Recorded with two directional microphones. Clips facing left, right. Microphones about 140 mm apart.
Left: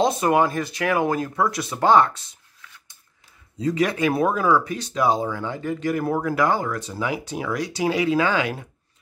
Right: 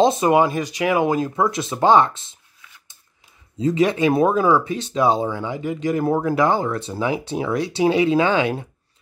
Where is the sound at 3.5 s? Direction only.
25° right (ahead or behind).